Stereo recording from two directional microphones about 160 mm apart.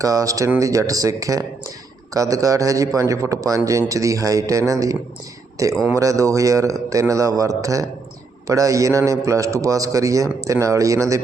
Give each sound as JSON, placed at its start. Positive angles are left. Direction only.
{"t": 0.0, "sound": "a man's voice", "side_deg": -20}